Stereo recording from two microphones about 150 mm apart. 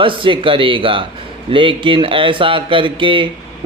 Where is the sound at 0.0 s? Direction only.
35° right (ahead or behind).